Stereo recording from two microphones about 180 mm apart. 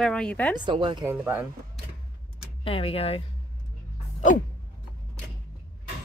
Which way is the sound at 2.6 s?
30° left (ahead or behind).